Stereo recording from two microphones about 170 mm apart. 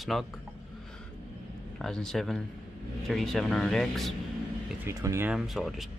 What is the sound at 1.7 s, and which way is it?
Speech, 5° left (ahead or behind).